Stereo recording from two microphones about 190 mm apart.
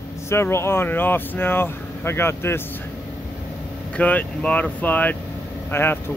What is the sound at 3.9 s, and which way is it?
Speech, 10° left (ahead or behind).